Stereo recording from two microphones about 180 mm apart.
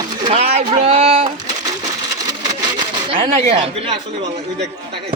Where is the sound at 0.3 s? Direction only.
30° right (ahead or behind).